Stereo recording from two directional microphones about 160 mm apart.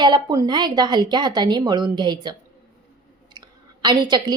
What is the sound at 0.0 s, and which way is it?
A woman's voice, 25° right (ahead or behind).